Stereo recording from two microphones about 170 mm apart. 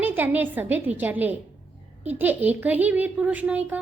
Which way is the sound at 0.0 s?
10° right (ahead or behind).